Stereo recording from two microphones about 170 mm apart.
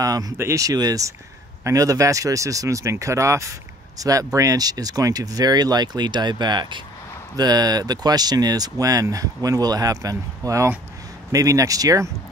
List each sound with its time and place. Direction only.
0.0 s speech: 20° right (ahead or behind)